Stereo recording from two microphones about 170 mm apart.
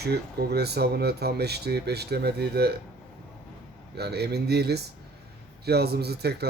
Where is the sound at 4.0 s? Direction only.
75° right (ahead or behind).